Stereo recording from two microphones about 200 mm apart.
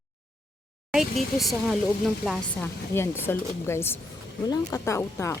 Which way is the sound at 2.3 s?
10° left (ahead or behind).